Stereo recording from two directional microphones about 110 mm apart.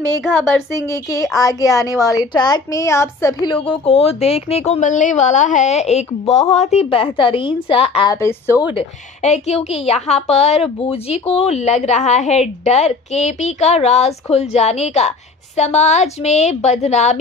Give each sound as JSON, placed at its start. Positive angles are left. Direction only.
{"t": 0.2, "sound": "speech", "side_deg": -5}
{"t": 0.8, "sound": "a woman's voice", "side_deg": 30}
{"t": 3.4, "sound": "a woman's voice", "side_deg": 50}
{"t": 8.1, "sound": "a woman's voice", "side_deg": 25}
{"t": 8.7, "sound": "a woman's voice", "side_deg": 80}